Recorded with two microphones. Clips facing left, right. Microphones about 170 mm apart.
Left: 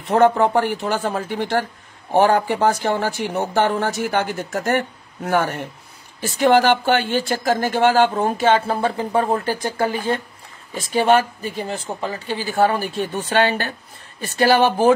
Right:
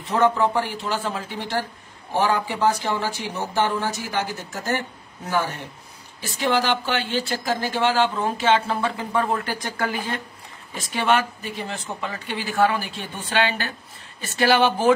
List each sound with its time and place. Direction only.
0.1 s speech: 55° left (ahead or behind)
6.2 s speech: 45° left (ahead or behind)